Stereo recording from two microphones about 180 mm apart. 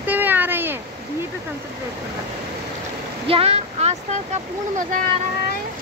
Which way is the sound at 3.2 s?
35° right (ahead or behind).